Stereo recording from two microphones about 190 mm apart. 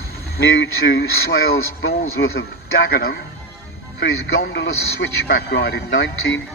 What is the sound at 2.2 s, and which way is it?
Speech, 70° left (ahead or behind).